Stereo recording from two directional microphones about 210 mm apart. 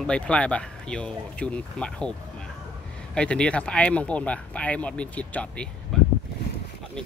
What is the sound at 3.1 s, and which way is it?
Speech, 5° left (ahead or behind).